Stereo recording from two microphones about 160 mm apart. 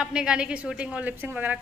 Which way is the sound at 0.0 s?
5° right (ahead or behind).